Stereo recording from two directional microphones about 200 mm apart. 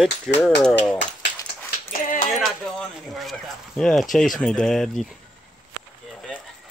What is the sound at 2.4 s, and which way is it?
Speech, centre (ahead or behind).